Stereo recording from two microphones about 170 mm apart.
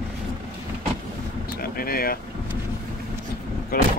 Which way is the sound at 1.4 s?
60° left (ahead or behind).